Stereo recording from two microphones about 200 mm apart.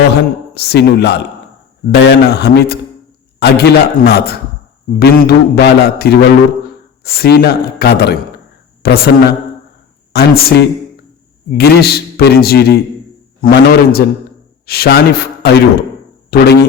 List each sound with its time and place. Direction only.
0.1 s a man's voice: 55° left (ahead or behind)